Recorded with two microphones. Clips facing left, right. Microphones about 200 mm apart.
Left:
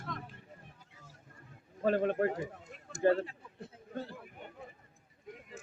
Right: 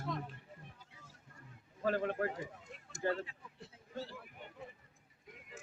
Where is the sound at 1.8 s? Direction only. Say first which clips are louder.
Left 5 dB; 20° left (ahead or behind).